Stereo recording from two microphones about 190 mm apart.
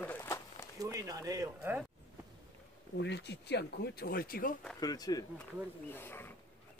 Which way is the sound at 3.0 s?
65° left (ahead or behind).